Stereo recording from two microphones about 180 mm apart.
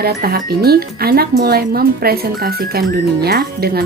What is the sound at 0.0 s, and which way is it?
Speech, 60° right (ahead or behind).